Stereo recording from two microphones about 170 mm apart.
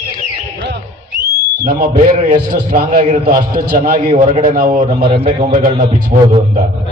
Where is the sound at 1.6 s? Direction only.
55° right (ahead or behind).